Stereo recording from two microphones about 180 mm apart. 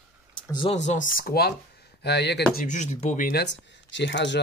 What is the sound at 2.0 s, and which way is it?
Speech, 70° left (ahead or behind).